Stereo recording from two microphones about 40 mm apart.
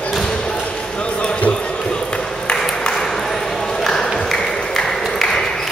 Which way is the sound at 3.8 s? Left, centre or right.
Centre.